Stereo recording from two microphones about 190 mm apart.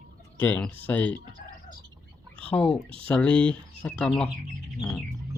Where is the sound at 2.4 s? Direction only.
5° left (ahead or behind).